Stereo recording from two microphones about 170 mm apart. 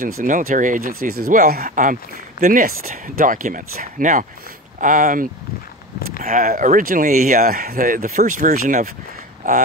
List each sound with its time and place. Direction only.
0.0 s speech: 55° right (ahead or behind)